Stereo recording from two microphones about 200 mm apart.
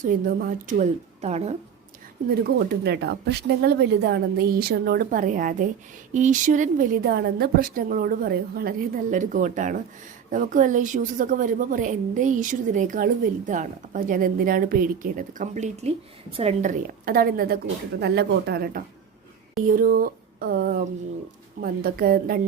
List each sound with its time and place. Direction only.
0.0 s a woman's voice: 45° right (ahead or behind)
0.8 s a woman's voice: 35° right (ahead or behind)
2.6 s a woman's voice: 55° right (ahead or behind)